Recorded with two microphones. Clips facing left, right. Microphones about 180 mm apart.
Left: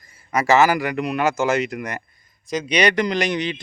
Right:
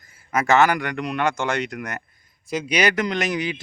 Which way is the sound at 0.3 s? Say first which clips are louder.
Left 2 dB; centre (ahead or behind).